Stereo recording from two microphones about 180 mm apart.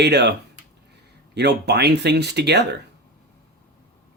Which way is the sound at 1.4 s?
65° right (ahead or behind).